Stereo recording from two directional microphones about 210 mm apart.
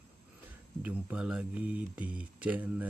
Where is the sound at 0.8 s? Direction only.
5° right (ahead or behind).